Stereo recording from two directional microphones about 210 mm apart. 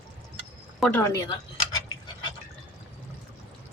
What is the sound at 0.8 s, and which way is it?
Speech, 10° left (ahead or behind).